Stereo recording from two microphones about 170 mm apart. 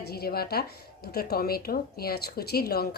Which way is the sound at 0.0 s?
65° left (ahead or behind).